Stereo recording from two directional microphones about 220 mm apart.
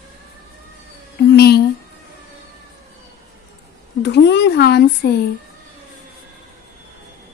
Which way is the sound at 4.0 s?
50° left (ahead or behind).